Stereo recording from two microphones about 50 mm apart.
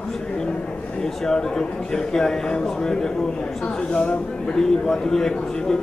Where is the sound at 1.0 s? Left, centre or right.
Centre.